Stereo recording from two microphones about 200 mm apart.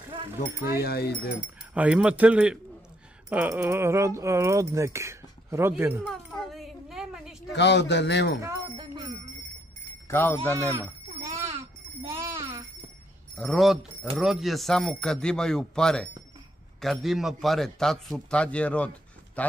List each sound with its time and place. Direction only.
0.1 s a sound: 15° right (ahead or behind)
0.4 s speech: 50° left (ahead or behind)
1.7 s speech: 5° right (ahead or behind)
6.0 s a sound: centre (ahead or behind)
7.5 s a man's voice: 60° left (ahead or behind)
8.4 s jingle bell: 20° right (ahead or behind)
10.0 s speech: 10° left (ahead or behind)
12.1 s a sound: 15° right (ahead or behind)
13.4 s speech: centre (ahead or behind)